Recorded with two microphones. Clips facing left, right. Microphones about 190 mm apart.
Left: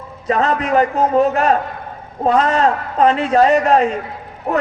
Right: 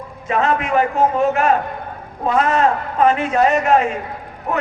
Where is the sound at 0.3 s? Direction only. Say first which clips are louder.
Left 2 dB; 35° left (ahead or behind).